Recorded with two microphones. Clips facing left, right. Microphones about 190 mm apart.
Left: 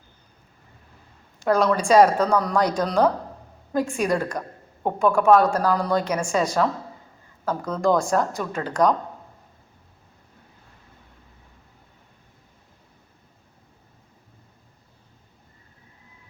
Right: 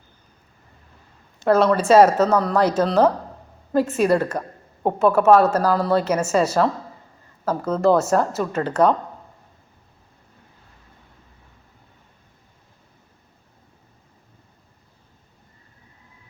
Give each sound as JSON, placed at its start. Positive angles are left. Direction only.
{"t": 1.5, "sound": "speech", "side_deg": -5}
{"t": 4.4, "sound": "a sound", "side_deg": -20}
{"t": 5.1, "sound": "speech", "side_deg": -5}